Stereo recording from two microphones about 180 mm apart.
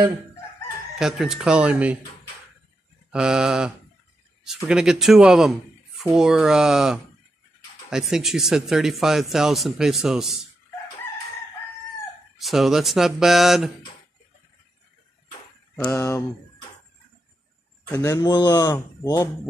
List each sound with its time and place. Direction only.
0.9 s speech: centre (ahead or behind)
3.1 s speech: 5° right (ahead or behind)
12.4 s speech: centre (ahead or behind)
16.0 s speech: 15° left (ahead or behind)
17.8 s speech: 15° left (ahead or behind)